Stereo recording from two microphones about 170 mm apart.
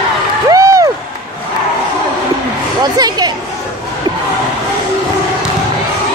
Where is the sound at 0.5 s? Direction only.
20° right (ahead or behind).